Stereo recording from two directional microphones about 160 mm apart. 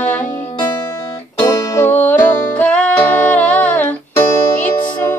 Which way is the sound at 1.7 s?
15° left (ahead or behind).